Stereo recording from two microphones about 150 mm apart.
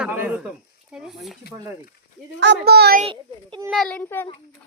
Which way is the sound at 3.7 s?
5° left (ahead or behind).